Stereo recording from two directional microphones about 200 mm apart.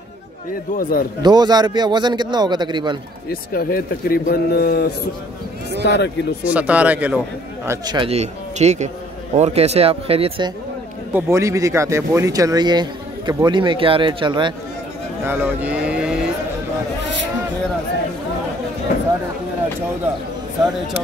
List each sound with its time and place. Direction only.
0.7 s speech: 45° left (ahead or behind)
1.2 s speech: 20° right (ahead or behind)
3.3 s speech: 50° left (ahead or behind)
6.4 s speech: 5° right (ahead or behind); by 10.5 s 30° right (ahead or behind)
11.1 s speech: 15° right (ahead or behind)
15.2 s speech: 10° right (ahead or behind)